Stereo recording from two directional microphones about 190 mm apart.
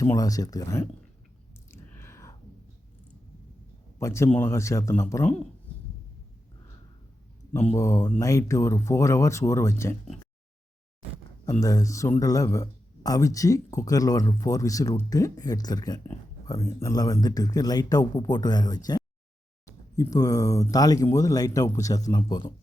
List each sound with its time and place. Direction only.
0.0 s speech: 20° left (ahead or behind)
1.7 s a sound: 15° left (ahead or behind)
3.9 s speech: 15° left (ahead or behind)
7.8 s speech: 15° left (ahead or behind)
11.4 s speech: 20° left (ahead or behind)